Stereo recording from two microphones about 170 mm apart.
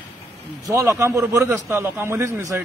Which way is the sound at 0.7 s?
15° right (ahead or behind).